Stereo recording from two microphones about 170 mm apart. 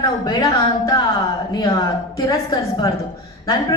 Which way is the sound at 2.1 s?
20° left (ahead or behind).